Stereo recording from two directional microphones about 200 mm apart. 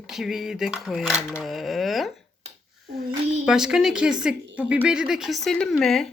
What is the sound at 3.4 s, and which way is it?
Speech, 5° right (ahead or behind).